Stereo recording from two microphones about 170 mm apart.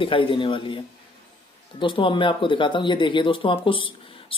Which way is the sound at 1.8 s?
30° left (ahead or behind).